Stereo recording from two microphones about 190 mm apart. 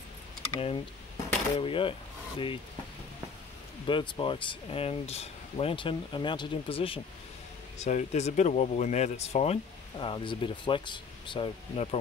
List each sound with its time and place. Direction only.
0.6 s speech: 30° left (ahead or behind)
3.8 s speech: 25° left (ahead or behind)